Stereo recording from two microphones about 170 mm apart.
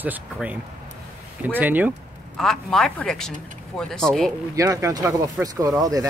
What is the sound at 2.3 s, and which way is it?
Speech, 5° left (ahead or behind).